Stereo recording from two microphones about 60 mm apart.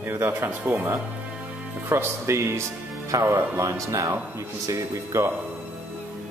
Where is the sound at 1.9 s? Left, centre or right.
Right.